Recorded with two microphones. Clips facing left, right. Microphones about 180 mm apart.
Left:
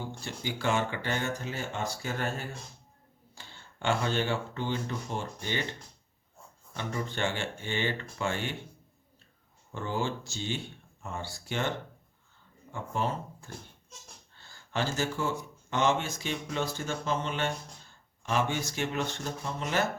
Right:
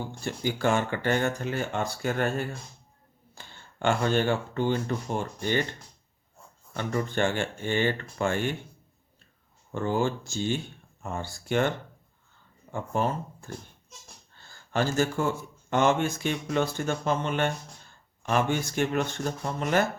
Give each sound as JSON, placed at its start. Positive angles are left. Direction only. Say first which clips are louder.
{"t": 0.3, "sound": "speech", "louder": "right 5 dB", "side_deg": -50}
{"t": 3.3, "sound": "speech", "louder": "right 4 dB", "side_deg": -50}
{"t": 6.7, "sound": "speech", "louder": "right 6 dB", "side_deg": -50}
{"t": 9.7, "sound": "speech", "louder": "right 6 dB", "side_deg": -50}
{"t": 12.7, "sound": "speech", "louder": "right 4 dB", "side_deg": -50}
{"t": 14.7, "sound": "speech", "louder": "right 5 dB", "side_deg": -50}